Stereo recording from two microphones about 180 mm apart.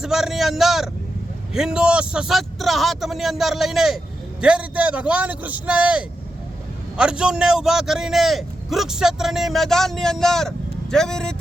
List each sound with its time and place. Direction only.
0.0 s a man's voice: centre (ahead or behind)